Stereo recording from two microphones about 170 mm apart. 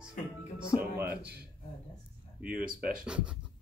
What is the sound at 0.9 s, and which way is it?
Speech, 10° right (ahead or behind).